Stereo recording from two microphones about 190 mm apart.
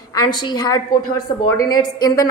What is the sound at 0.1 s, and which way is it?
A woman's voice, 20° left (ahead or behind).